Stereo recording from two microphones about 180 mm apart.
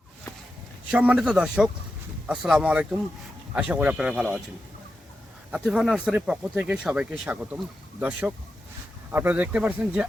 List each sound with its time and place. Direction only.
0.9 s speech: 5° right (ahead or behind)
5.5 s speech: 5° right (ahead or behind)